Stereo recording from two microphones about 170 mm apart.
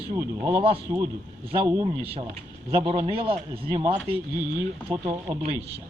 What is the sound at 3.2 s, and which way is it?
Speech, 35° right (ahead or behind).